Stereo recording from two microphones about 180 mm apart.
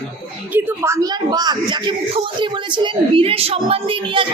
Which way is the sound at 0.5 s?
20° right (ahead or behind).